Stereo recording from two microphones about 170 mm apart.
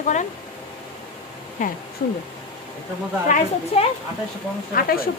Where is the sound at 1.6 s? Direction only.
50° left (ahead or behind).